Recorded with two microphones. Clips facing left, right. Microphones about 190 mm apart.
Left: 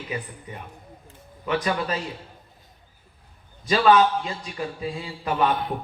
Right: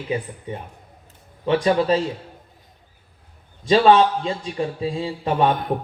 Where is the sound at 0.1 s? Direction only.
30° right (ahead or behind).